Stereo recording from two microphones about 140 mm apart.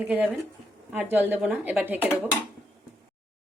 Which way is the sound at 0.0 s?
10° right (ahead or behind).